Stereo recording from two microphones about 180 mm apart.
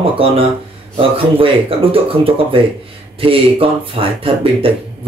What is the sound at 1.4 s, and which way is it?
Speech, 30° right (ahead or behind).